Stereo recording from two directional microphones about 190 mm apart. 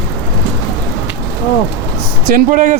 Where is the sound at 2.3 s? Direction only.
45° right (ahead or behind).